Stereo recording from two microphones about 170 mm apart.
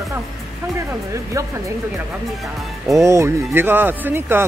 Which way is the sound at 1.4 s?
20° right (ahead or behind).